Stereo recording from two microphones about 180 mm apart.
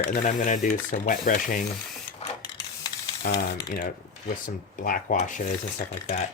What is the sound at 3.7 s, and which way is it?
Speech, 45° left (ahead or behind).